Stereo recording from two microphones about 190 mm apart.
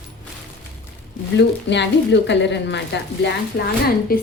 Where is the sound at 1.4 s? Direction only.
65° left (ahead or behind).